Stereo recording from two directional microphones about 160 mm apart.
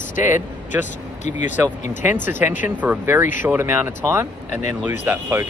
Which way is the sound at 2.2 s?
15° right (ahead or behind).